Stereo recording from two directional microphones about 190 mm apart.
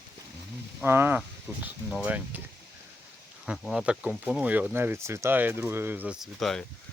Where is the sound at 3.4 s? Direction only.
5° right (ahead or behind).